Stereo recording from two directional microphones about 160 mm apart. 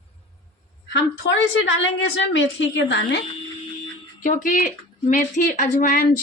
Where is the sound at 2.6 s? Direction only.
90° left.